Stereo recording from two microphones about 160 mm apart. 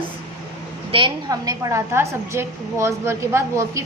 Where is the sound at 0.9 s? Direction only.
30° right (ahead or behind).